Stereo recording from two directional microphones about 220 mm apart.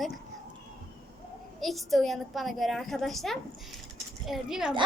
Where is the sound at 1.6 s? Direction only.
Centre (ahead or behind).